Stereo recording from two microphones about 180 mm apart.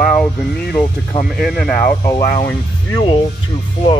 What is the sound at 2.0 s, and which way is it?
Speech, 15° left (ahead or behind).